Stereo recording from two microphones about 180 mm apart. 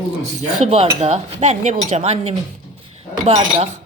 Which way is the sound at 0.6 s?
35° right (ahead or behind).